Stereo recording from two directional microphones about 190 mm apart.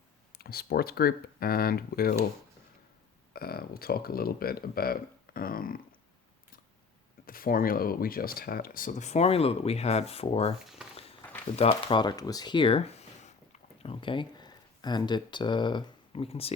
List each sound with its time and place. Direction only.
0.3 s speech: 55° left (ahead or behind)
3.3 s speech: 55° left (ahead or behind)
7.3 s speech: 50° left (ahead or behind); by 10.5 s 30° left (ahead or behind)
10.6 s speech: centre (ahead or behind)
11.5 s speech: 30° left (ahead or behind)